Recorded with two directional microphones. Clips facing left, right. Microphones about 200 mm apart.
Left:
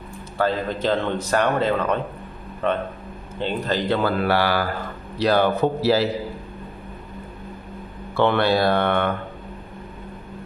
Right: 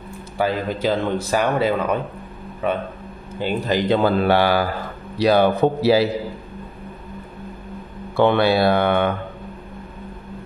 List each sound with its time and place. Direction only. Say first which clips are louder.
0.4 s speech: right 1 dB; 10° right (ahead or behind)
8.2 s speech: right 3 dB; 10° right (ahead or behind)